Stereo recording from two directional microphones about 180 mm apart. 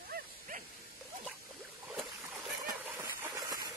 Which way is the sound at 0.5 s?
50° right (ahead or behind).